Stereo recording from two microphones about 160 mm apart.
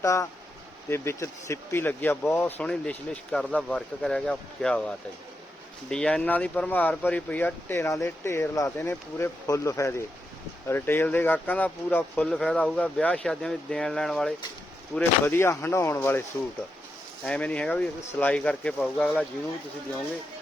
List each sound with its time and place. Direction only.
0.0 s speech: 20° left (ahead or behind); by 14.3 s 5° left (ahead or behind)
14.9 s speech: 15° left (ahead or behind)
17.2 s speech: 5° left (ahead or behind)